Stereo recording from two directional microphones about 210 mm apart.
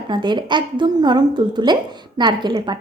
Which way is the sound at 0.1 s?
20° right (ahead or behind).